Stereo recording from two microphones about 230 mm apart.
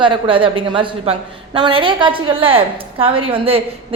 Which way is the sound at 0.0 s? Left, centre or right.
Right.